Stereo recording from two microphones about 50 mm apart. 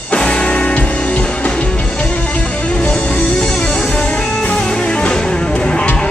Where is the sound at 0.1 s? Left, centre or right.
Left.